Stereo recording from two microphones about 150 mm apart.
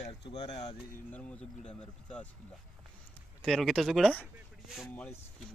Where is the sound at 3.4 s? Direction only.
5° left (ahead or behind).